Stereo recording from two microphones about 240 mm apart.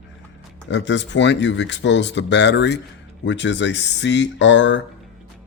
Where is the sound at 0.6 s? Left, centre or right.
Left.